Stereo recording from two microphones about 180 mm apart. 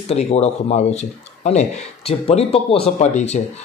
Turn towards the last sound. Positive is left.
turn(degrees=40)  # may be behind; listen again after turning